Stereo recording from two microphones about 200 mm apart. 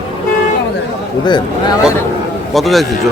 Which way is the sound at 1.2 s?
20° left (ahead or behind).